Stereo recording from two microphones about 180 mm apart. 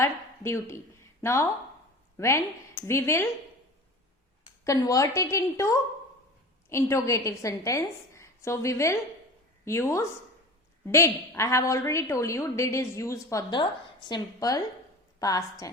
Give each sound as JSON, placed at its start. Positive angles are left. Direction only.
{"t": 0.0, "sound": "a woman's voice", "side_deg": 15}
{"t": 4.6, "sound": "a woman's voice", "side_deg": 20}